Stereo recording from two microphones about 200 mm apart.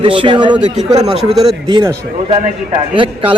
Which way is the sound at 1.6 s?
20° right (ahead or behind).